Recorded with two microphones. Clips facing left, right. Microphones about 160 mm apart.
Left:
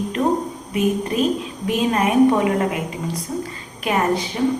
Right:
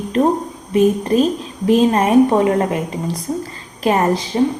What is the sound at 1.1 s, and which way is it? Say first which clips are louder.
A woman's voice: right 4 dB; 40° right (ahead or behind).